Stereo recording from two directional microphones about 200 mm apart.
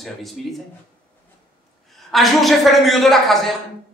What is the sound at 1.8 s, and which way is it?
A man's voice, centre (ahead or behind).